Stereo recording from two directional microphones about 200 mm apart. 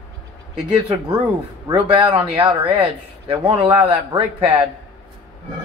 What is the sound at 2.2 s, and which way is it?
Speech, 30° right (ahead or behind).